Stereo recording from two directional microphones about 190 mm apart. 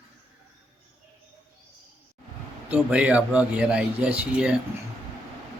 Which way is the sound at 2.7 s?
5° right (ahead or behind).